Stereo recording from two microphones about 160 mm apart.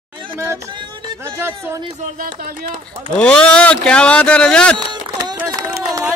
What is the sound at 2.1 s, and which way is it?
Speech, 60° right (ahead or behind).